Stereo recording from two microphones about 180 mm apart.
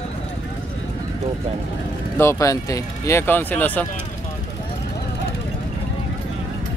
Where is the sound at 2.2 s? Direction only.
15° left (ahead or behind).